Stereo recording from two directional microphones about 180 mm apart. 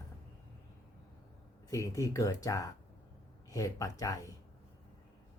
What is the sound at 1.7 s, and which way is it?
Speech, 20° left (ahead or behind).